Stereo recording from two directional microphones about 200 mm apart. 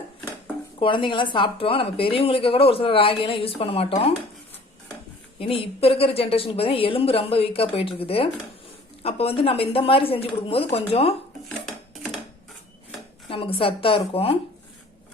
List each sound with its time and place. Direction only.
0.8 s a woman's voice: 25° left (ahead or behind)
5.4 s a woman's voice: 30° left (ahead or behind)
13.2 s a woman's voice: 25° left (ahead or behind)